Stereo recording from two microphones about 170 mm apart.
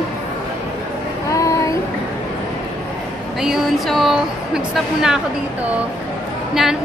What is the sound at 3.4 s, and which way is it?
A woman's voice, centre (ahead or behind).